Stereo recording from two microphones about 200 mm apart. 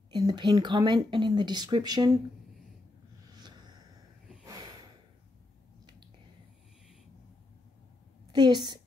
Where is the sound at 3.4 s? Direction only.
20° right (ahead or behind).